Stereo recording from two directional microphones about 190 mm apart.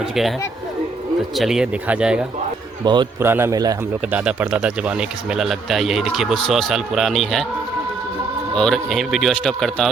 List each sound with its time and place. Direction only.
1.4 s speech: centre (ahead or behind)
2.8 s a man's voice: 25° right (ahead or behind)
3.2 s a man's voice: 10° right (ahead or behind)
4.2 s speech: 5° right (ahead or behind)
8.5 s speech: 5° left (ahead or behind)